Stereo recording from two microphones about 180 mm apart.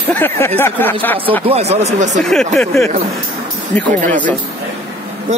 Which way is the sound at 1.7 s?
40° right (ahead or behind).